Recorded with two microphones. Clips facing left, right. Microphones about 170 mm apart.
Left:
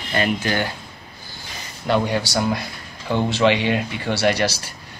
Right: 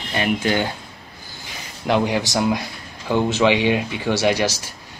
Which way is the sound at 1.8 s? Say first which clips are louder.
Right 1 dB; 15° right (ahead or behind).